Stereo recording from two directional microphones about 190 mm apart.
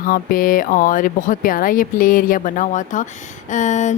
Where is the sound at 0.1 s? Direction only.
50° left (ahead or behind).